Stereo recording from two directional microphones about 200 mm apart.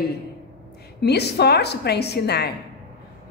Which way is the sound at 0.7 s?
55° left (ahead or behind).